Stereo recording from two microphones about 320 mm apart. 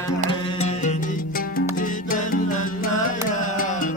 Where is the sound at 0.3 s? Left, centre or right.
Centre.